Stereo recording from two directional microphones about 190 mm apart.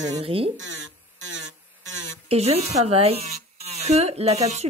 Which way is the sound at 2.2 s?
35° right (ahead or behind).